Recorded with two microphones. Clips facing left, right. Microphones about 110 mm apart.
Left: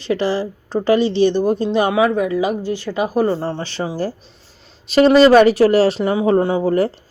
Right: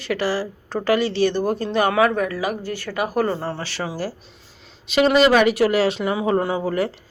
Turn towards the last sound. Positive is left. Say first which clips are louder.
# left 5 dB
turn(degrees=25)  # may be behind; listen again after turning